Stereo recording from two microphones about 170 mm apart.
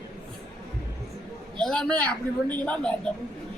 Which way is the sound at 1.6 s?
5° left (ahead or behind).